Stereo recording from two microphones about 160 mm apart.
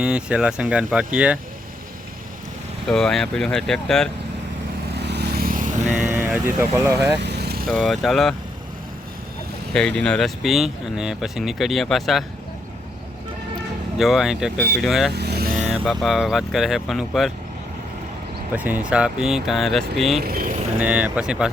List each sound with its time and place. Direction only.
0.0 s speech: 5° right (ahead or behind)
2.9 s speech: 5° left (ahead or behind)
4.9 s vehicle: 90° right; by 5.9 s 55° right (ahead or behind)
6.1 s speech: 15° right (ahead or behind)
7.2 s vehicle: 90° right
7.7 s speech: centre (ahead or behind)
9.7 s speech: 5° left (ahead or behind)
14.0 s speech: centre (ahead or behind)
15.1 s vehicle: 90° right
15.7 s speech: centre (ahead or behind)
18.5 s speech: 10° right (ahead or behind)
20.2 s speech: 65° right (ahead or behind)
20.7 s speech: 10° right (ahead or behind)